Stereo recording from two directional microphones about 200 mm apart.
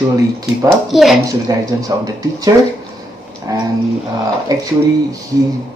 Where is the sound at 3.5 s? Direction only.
20° right (ahead or behind).